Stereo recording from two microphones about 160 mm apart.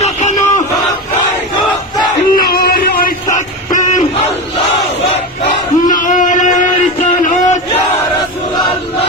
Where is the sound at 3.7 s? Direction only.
50° left (ahead or behind).